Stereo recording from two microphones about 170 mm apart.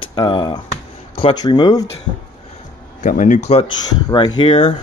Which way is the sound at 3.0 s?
50° left (ahead or behind).